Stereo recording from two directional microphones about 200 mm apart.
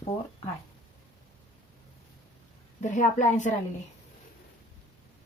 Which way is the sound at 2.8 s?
40° left (ahead or behind).